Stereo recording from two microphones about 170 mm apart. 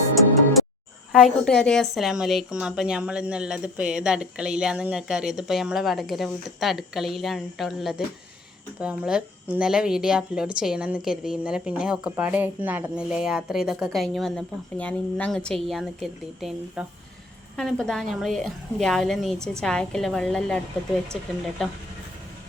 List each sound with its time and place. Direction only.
1.1 s speech: 5° left (ahead or behind)